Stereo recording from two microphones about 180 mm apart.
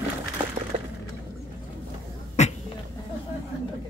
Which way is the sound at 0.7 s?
35° right (ahead or behind).